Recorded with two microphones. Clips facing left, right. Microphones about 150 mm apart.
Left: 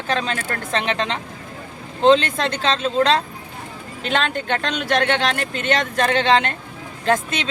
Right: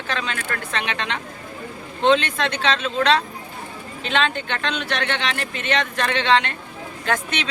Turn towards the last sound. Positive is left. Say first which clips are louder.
# left 4 dB
turn(degrees=30)  # may be behind; listen again after turning